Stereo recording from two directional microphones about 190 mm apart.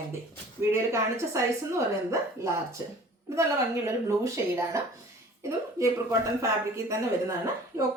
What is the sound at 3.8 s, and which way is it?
A woman's voice, 15° right (ahead or behind).